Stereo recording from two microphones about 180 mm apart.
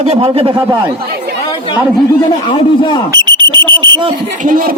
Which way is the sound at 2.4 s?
25° left (ahead or behind).